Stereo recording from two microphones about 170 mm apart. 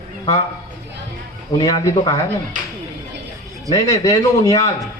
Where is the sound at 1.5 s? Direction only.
20° left (ahead or behind).